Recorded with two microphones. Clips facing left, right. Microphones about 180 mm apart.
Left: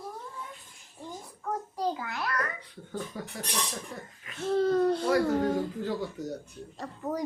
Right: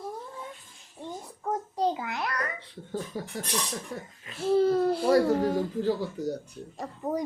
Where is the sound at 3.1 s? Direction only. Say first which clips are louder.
Right 3 dB; 30° right (ahead or behind).